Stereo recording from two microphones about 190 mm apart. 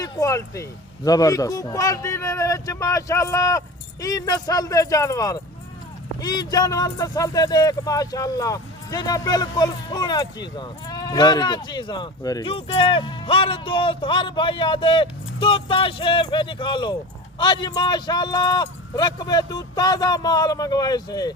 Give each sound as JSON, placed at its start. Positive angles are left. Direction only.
{"t": 0.0, "sound": "speech", "side_deg": 15}